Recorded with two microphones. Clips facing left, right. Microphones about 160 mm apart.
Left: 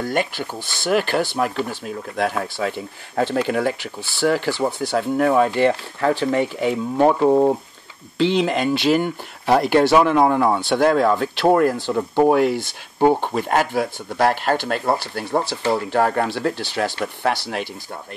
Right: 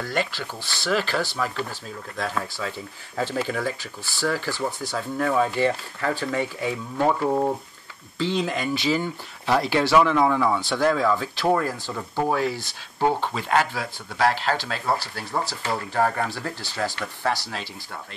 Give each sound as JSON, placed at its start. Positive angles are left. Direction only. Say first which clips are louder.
{"t": 0.1, "sound": "speech", "louder": "left 4 dB", "side_deg": 55}